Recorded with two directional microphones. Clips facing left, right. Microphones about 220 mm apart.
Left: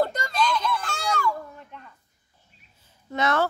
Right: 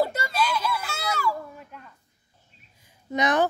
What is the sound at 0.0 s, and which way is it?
Children playing, 5° right (ahead or behind).